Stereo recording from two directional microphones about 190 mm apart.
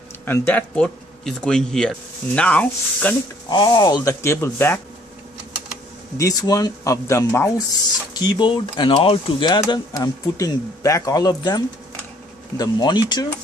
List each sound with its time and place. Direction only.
0.2 s speech: 10° left (ahead or behind)
3.4 s speech: 20° left (ahead or behind)
6.1 s speech: 15° left (ahead or behind)